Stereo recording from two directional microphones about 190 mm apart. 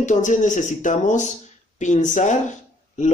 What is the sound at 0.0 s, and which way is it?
Speech, 40° left (ahead or behind).